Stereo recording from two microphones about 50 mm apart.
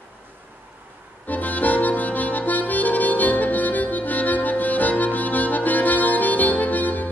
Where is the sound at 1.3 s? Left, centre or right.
Left.